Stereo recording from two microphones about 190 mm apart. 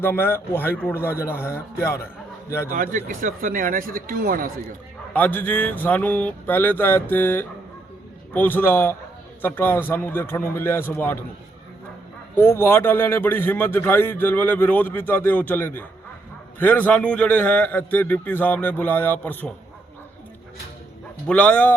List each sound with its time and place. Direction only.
0.0 s a man's voice: 10° left (ahead or behind)
2.7 s speech: 45° right (ahead or behind)
5.1 s a man's voice: 10° left (ahead or behind)
12.4 s a man's voice: 10° left (ahead or behind)
21.2 s a man's voice: 5° left (ahead or behind)